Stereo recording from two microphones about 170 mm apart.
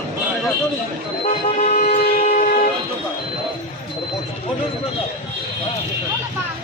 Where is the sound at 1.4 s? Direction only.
40° left (ahead or behind).